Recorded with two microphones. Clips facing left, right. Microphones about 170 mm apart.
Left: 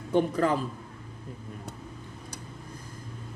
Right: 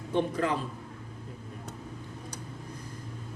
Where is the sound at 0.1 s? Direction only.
40° left (ahead or behind).